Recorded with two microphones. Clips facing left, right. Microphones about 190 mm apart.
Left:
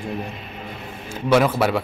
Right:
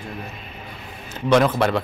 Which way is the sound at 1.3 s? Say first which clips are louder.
Even; 5° left (ahead or behind).